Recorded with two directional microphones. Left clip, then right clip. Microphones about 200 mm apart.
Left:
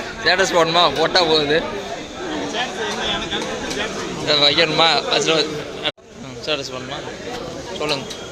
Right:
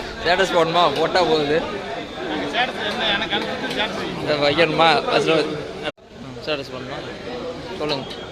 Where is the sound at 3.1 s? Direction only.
25° right (ahead or behind).